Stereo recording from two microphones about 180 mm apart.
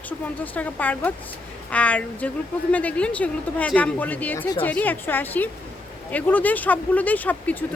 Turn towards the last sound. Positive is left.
turn(degrees=10)  # may be behind; listen again after turning